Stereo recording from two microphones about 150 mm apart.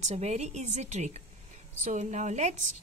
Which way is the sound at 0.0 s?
45° right (ahead or behind).